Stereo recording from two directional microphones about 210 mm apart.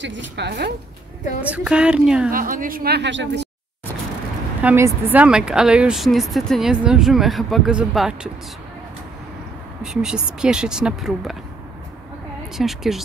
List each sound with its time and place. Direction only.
0.0 s a woman's voice: 60° right (ahead or behind)
1.4 s speech: 5° right (ahead or behind)
2.3 s a woman's voice: 40° right (ahead or behind); by 3.4 s 55° right (ahead or behind)
4.6 s speech: 10° right (ahead or behind)
9.8 s speech: 5° right (ahead or behind)
12.5 s speech: centre (ahead or behind)